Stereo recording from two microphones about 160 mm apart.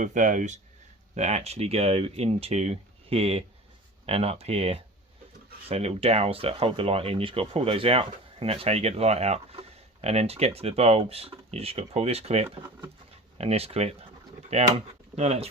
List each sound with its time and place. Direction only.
0.0 s speech: 50° right (ahead or behind)